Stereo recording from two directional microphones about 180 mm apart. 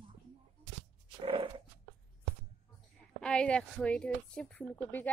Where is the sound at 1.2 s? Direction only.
30° right (ahead or behind).